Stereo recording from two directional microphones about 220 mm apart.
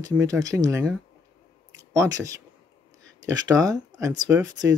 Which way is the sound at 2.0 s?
15° right (ahead or behind).